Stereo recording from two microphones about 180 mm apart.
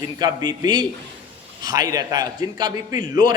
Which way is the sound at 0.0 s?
20° right (ahead or behind).